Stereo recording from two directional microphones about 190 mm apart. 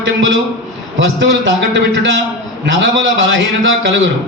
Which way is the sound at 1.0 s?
70° right (ahead or behind).